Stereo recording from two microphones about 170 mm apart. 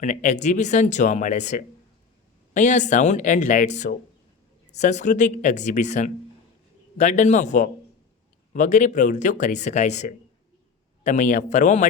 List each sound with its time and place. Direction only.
0.0 s speech: 45° left (ahead or behind)